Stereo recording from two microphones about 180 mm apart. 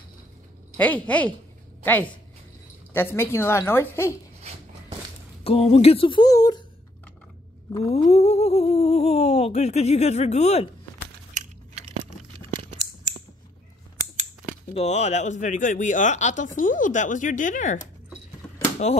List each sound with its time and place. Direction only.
0.7 s a woman's voice: 10° left (ahead or behind)
5.4 s speech: 35° left (ahead or behind)
7.9 s speech: 35° left (ahead or behind)
14.7 s speech: 35° left (ahead or behind)